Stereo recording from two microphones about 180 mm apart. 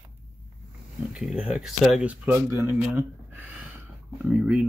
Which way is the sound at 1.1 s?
5° right (ahead or behind).